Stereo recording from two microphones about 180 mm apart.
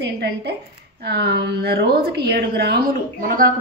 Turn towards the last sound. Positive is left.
turn(degrees=-50)  # may be behind; listen again after turning